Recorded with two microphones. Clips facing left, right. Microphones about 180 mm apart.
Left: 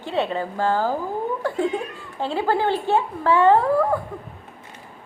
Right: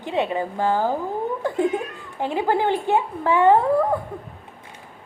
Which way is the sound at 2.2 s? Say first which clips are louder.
Even; 15° right (ahead or behind).